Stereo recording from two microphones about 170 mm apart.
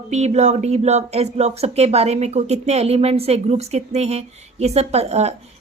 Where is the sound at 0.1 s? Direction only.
40° right (ahead or behind).